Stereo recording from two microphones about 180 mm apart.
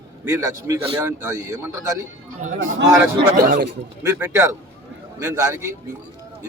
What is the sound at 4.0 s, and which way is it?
A man's voice, 15° right (ahead or behind).